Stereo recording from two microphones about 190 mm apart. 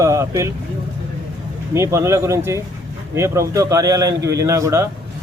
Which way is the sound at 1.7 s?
15° right (ahead or behind).